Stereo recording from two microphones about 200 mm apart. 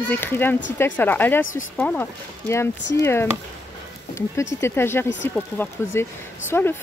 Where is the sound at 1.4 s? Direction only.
80° left.